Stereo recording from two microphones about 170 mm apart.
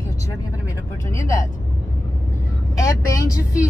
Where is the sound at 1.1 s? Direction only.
15° left (ahead or behind).